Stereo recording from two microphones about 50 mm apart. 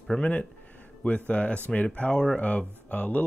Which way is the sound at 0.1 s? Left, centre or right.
Centre.